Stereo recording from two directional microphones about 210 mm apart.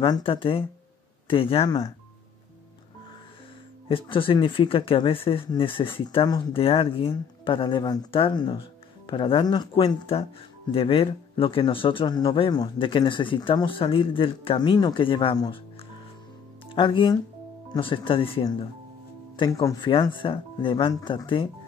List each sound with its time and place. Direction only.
0.0 s speech: 25° left (ahead or behind)
3.9 s speech: 25° left (ahead or behind)
16.7 s speech: 25° left (ahead or behind)